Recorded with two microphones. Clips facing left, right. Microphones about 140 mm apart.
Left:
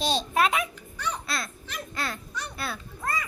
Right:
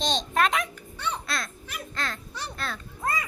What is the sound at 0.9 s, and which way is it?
Babbling, 30° right (ahead or behind).